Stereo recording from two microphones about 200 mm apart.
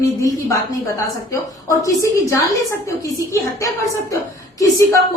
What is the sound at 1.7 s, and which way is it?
Speech, 15° left (ahead or behind).